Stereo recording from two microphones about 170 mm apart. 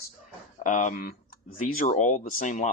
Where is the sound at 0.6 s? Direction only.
45° left (ahead or behind).